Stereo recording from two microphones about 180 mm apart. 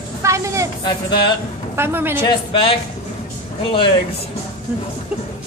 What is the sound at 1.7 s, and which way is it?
Speech, 10° right (ahead or behind).